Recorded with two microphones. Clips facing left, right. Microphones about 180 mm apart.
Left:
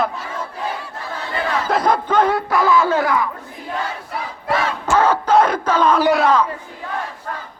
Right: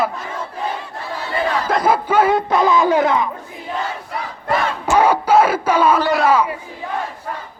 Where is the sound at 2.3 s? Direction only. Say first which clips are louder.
Right 1 dB; 20° right (ahead or behind).